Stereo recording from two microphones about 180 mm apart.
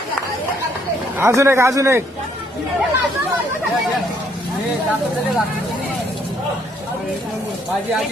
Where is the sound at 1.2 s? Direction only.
15° right (ahead or behind).